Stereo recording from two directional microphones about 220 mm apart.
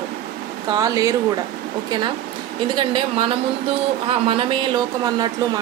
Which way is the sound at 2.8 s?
20° right (ahead or behind).